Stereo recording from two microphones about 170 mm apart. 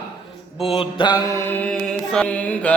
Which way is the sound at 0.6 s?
35° left (ahead or behind).